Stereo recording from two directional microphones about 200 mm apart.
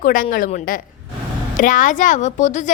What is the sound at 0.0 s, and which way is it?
A woman's voice, 40° left (ahead or behind).